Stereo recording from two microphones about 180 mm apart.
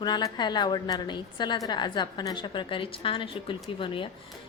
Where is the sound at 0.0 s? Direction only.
25° left (ahead or behind).